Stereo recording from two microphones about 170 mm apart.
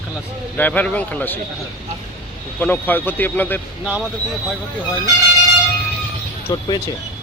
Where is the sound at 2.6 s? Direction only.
10° left (ahead or behind).